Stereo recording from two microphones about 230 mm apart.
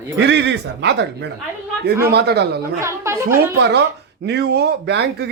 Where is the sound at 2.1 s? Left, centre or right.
Right.